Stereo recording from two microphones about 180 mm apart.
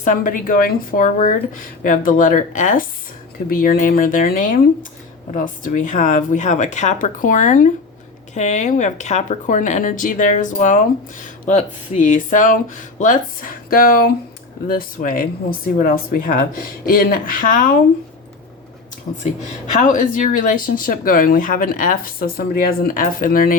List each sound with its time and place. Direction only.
0.0 s speech: 45° left (ahead or behind)
19.7 s speech: 45° left (ahead or behind)